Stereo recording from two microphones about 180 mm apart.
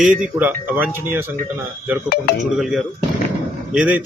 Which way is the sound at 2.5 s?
Centre (ahead or behind).